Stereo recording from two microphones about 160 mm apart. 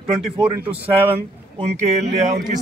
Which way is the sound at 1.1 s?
45° right (ahead or behind).